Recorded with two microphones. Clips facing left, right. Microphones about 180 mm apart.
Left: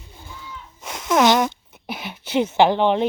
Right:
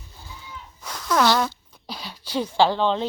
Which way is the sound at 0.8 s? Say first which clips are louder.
Left 3 dB; 20° left (ahead or behind).